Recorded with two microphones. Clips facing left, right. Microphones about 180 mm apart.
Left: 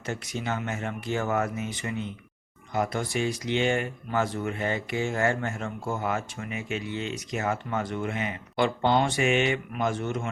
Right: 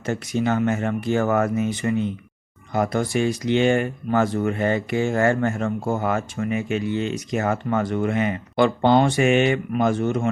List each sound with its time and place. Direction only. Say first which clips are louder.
0.0 s speech: right 9 dB; 50° right (ahead or behind)